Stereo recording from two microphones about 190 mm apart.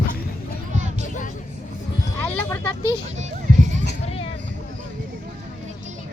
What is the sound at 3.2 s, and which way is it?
Music, 40° right (ahead or behind).